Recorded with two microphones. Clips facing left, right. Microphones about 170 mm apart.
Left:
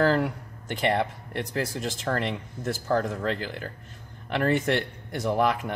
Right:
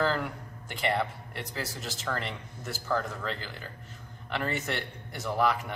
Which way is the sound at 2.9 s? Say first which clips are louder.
Left 5 dB; 55° left (ahead or behind).